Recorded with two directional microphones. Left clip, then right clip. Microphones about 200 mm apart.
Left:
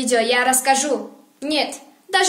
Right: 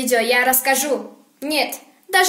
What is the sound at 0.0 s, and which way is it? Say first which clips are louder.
A woman's voice: right 1 dB; centre (ahead or behind).